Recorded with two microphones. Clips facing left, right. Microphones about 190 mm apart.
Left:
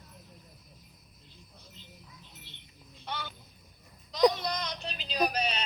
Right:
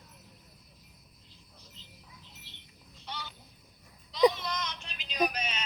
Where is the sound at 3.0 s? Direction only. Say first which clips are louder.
Left 4 dB; 55° left (ahead or behind).